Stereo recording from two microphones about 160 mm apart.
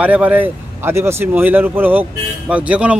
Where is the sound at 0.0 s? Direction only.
10° right (ahead or behind).